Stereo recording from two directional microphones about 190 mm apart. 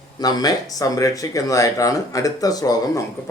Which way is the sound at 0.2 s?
20° left (ahead or behind).